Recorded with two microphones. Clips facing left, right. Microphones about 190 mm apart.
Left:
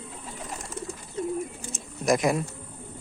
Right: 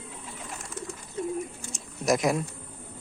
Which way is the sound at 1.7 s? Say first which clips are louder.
Left 1 dB; centre (ahead or behind).